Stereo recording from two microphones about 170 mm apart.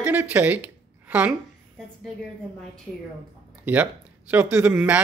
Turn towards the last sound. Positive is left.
turn(degrees=-10)  # may be behind; listen again after turning